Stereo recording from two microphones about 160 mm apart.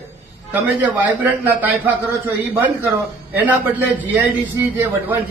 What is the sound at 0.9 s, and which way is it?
A man's voice, 10° right (ahead or behind).